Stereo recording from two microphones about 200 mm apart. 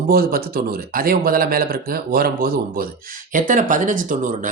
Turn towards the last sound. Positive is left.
turn(degrees=-40)  # may be behind; listen again after turning